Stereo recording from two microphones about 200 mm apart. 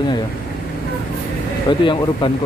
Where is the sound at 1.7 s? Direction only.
20° left (ahead or behind).